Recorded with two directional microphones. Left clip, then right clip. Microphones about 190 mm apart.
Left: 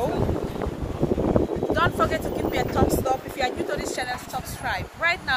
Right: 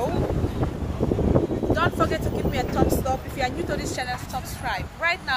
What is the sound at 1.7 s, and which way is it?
Speech, 5° left (ahead or behind).